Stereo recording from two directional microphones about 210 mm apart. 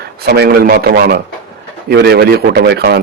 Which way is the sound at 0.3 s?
50° right (ahead or behind).